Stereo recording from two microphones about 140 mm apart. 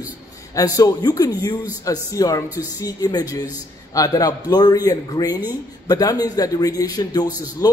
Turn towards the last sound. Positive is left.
turn(degrees=30)  # may be behind; listen again after turning